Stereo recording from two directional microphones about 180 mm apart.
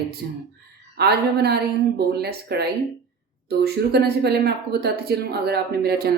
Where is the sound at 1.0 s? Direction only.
65° right (ahead or behind).